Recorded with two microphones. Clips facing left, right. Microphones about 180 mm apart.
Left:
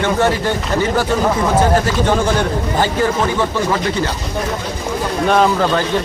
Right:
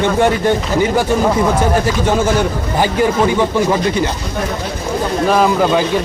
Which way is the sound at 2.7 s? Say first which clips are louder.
Right 3 dB; 15° right (ahead or behind).